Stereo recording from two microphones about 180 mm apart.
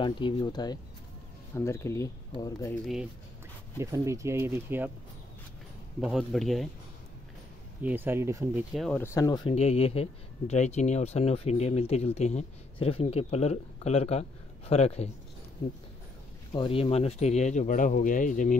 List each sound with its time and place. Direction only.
0.0 s speech: 25° left (ahead or behind)
3.7 s speech: 15° right (ahead or behind)
5.9 s speech: centre (ahead or behind)
7.8 s speech: 10° right (ahead or behind)
8.7 s speech: centre (ahead or behind)
9.0 s speech: 15° left (ahead or behind)
9.6 s speech: 35° left (ahead or behind)
16.5 s speech: 30° left (ahead or behind); by 18.6 s 45° left (ahead or behind)